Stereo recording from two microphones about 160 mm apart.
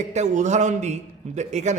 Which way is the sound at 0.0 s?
45° right (ahead or behind).